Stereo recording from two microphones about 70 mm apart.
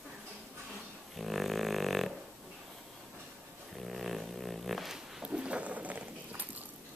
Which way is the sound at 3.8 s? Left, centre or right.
Centre.